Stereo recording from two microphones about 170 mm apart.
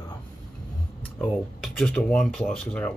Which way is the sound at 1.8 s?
5° left (ahead or behind).